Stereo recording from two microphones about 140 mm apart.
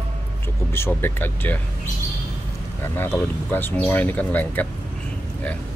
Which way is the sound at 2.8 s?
15° left (ahead or behind).